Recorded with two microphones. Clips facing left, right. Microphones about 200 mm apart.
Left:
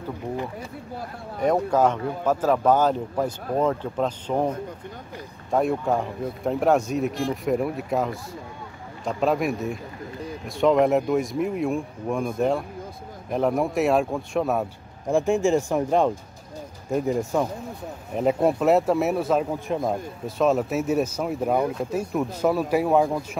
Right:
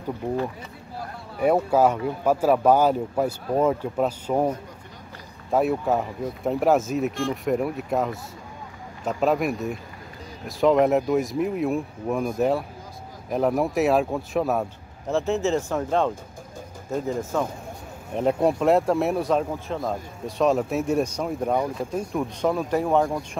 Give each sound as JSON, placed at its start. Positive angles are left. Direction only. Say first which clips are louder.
{"t": 1.4, "sound": "speech", "louder": "right 1 dB", "side_deg": -10}
{"t": 5.5, "sound": "speech", "louder": "right 1 dB", "side_deg": -5}
{"t": 15.0, "sound": "speech", "louder": "left 3 dB", "side_deg": 15}
{"t": 18.1, "sound": "speech", "louder": "even", "side_deg": 0}
{"t": 19.5, "sound": "speech", "louder": "left 3 dB", "side_deg": 15}
{"t": 20.2, "sound": "speech", "louder": "even", "side_deg": 0}